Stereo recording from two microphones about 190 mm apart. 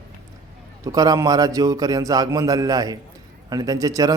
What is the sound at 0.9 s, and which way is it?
A man's voice, 20° right (ahead or behind).